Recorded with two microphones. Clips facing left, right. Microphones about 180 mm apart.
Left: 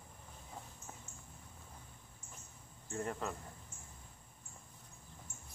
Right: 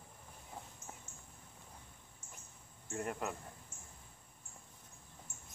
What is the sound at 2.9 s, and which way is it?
Speech, 15° right (ahead or behind).